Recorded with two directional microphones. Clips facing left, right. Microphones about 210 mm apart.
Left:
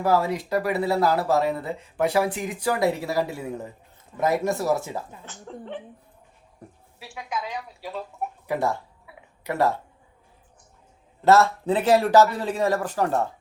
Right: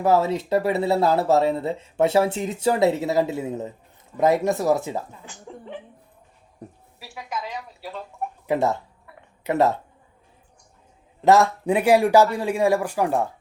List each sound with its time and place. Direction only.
0.0 s speech: 25° right (ahead or behind)
5.5 s speech: 5° right (ahead or behind)
7.0 s speech: 5° right (ahead or behind)
8.4 s speech: 20° right (ahead or behind)
11.2 s speech: 15° right (ahead or behind)